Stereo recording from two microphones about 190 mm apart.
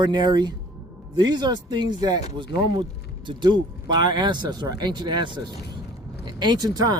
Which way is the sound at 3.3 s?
25° right (ahead or behind).